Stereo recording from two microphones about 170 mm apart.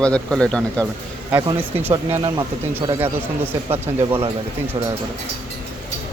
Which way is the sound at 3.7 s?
15° right (ahead or behind).